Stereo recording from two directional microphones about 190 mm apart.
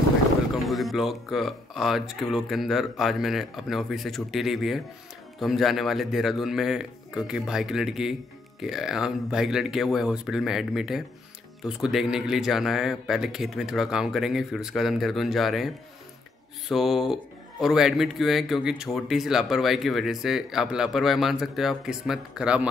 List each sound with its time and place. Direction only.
0.7 s speech: centre (ahead or behind)